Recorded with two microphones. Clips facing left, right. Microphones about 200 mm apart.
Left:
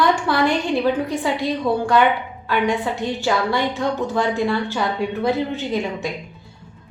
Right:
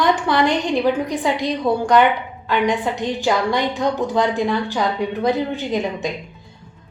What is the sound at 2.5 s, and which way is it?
A woman's voice, 15° right (ahead or behind).